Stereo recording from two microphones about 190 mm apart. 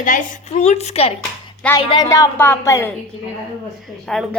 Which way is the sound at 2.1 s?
15° left (ahead or behind).